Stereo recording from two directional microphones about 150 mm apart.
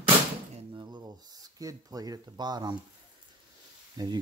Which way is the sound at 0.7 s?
25° right (ahead or behind).